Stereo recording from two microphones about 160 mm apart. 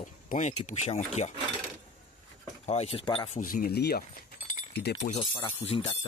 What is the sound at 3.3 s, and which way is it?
Speech, 60° left (ahead or behind).